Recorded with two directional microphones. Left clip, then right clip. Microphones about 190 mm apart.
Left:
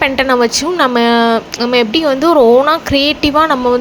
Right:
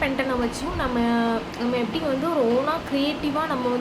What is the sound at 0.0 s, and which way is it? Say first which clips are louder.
A woman's voice: left 13 dB; 55° left (ahead or behind).